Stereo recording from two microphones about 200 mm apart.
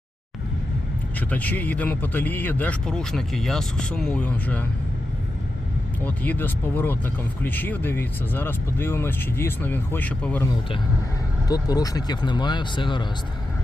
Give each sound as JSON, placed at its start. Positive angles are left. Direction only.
{"t": 1.3, "sound": "speech", "side_deg": 5}
{"t": 6.1, "sound": "speech", "side_deg": 10}
{"t": 11.4, "sound": "speech", "side_deg": 20}